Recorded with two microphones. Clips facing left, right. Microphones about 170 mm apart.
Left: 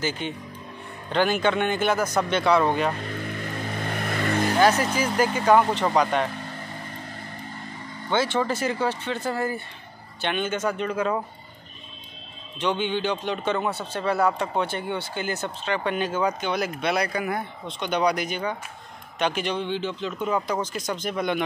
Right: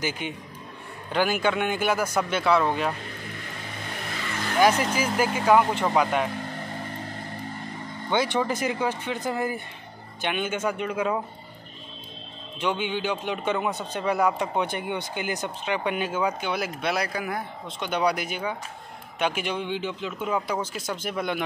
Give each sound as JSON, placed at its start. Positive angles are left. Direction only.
{"t": 0.0, "sound": "speech", "side_deg": -10}
{"t": 4.1, "sound": "vehicle", "side_deg": 55}
{"t": 4.6, "sound": "speech", "side_deg": -10}
{"t": 8.1, "sound": "speech", "side_deg": -15}
{"t": 12.5, "sound": "speech", "side_deg": -10}